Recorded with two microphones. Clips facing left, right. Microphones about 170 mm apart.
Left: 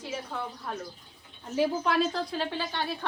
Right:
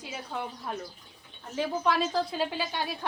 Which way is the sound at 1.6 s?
Centre (ahead or behind).